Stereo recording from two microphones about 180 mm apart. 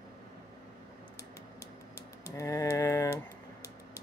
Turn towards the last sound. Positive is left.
turn(degrees=15)  # may be behind; listen again after turning